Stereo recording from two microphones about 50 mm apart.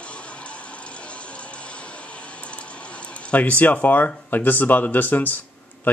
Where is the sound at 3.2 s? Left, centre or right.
Left.